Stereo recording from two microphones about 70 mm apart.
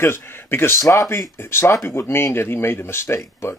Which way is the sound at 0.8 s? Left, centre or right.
Left.